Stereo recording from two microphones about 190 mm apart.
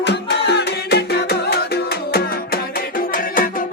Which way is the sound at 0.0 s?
65° left (ahead or behind).